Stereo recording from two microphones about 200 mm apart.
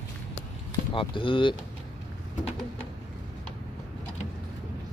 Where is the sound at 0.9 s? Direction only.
25° left (ahead or behind).